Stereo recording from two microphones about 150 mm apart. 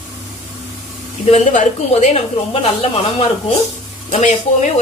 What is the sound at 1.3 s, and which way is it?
A woman's voice, 50° left (ahead or behind).